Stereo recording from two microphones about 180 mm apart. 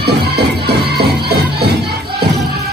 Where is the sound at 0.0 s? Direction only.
65° right (ahead or behind).